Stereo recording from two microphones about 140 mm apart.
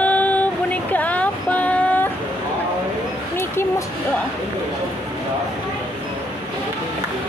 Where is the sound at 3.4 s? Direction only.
20° left (ahead or behind).